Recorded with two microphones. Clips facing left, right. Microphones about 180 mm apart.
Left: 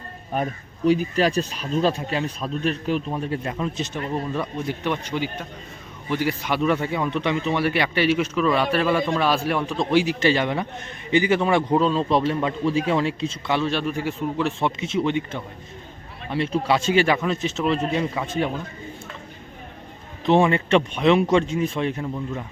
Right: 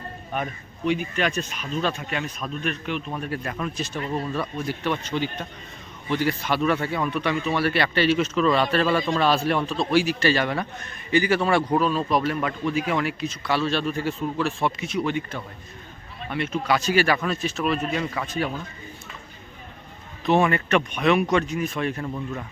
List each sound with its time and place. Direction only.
0.3 s speech: 35° left (ahead or behind)
3.1 s a man's voice: 25° left (ahead or behind)
20.2 s a man's voice: 25° left (ahead or behind)
22.0 s speech: 10° left (ahead or behind)